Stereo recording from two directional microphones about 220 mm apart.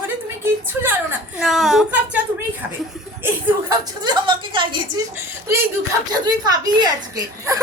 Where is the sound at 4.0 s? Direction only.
20° right (ahead or behind).